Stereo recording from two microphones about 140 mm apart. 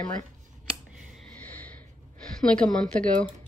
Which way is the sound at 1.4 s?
10° left (ahead or behind).